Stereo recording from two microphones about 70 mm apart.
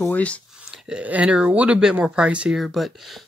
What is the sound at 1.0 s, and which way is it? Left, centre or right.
Speech, centre.